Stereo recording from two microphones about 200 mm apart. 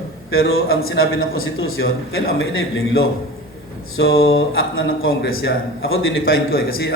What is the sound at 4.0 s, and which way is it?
Speech, 50° left (ahead or behind).